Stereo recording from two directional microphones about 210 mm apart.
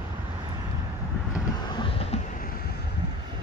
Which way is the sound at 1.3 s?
20° left (ahead or behind).